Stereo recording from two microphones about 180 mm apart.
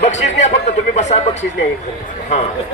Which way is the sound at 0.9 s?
40° left (ahead or behind).